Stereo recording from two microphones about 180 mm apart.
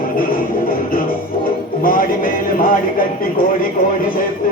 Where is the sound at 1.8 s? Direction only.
50° left (ahead or behind).